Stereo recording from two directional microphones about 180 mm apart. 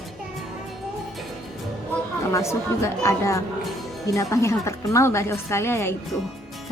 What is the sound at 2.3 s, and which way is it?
A woman's voice, 15° left (ahead or behind).